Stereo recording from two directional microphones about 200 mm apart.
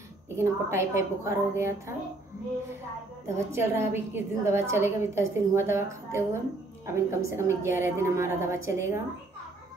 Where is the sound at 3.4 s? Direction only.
15° right (ahead or behind).